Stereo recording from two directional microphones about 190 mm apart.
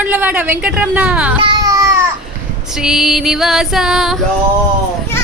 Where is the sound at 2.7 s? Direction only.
Centre (ahead or behind).